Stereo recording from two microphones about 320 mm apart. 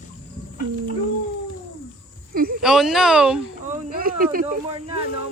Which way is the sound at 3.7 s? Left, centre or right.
Right.